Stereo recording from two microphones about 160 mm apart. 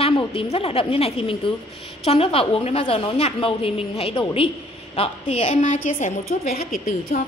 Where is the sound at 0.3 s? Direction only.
35° left (ahead or behind); by 6.7 s 70° left (ahead or behind).